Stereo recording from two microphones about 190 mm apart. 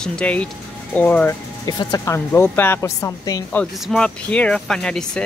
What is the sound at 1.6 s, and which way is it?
A woman's voice, 20° left (ahead or behind).